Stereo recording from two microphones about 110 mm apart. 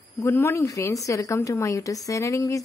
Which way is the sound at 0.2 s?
20° left (ahead or behind).